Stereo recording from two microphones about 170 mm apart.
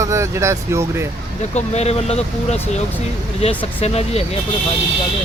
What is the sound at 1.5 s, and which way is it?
Speech, 40° left (ahead or behind).